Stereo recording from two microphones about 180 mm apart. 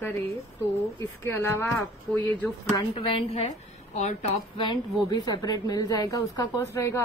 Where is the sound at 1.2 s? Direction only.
15° left (ahead or behind).